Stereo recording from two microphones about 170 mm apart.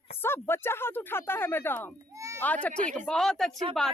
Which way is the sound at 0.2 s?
15° left (ahead or behind).